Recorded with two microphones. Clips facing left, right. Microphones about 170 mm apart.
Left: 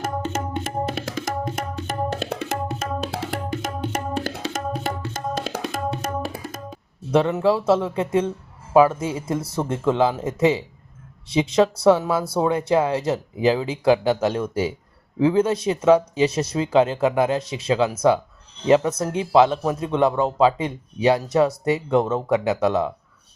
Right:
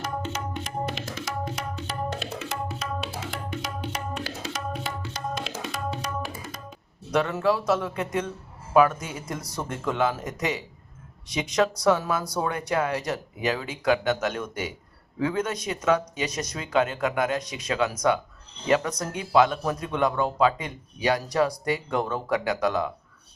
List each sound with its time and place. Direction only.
1.2 s tabla: 50° left (ahead or behind)
4.7 s music: 45° left (ahead or behind)
5.7 s tabla: 50° left (ahead or behind)
7.1 s speech: 25° left (ahead or behind)